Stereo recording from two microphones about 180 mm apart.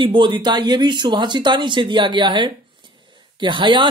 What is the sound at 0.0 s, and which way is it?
Speech, 25° right (ahead or behind).